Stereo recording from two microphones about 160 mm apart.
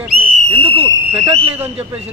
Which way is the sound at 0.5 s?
35° right (ahead or behind).